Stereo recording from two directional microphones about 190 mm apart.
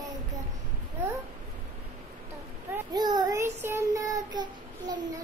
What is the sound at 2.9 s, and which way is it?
Child singing, 20° right (ahead or behind).